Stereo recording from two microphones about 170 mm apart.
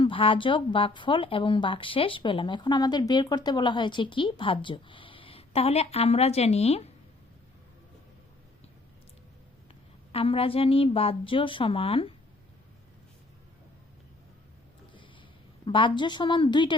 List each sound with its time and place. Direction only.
0.0 s speech: 30° left (ahead or behind)
10.1 s a woman's voice: 35° left (ahead or behind)
15.6 s speech: 30° left (ahead or behind)